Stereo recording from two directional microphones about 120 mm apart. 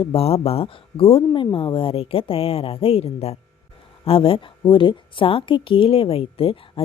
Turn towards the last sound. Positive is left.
turn(degrees=50)  # may be behind; listen again after turning